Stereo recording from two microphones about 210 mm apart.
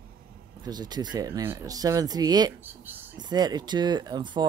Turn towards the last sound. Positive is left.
turn(degrees=-20)  # may be behind; listen again after turning